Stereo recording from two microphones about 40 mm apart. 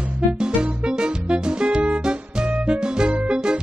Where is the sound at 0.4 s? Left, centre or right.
Centre.